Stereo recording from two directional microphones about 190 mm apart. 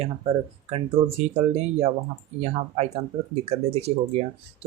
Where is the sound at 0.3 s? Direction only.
30° right (ahead or behind).